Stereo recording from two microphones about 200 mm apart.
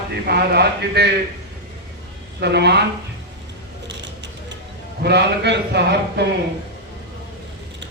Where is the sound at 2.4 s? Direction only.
55° right (ahead or behind).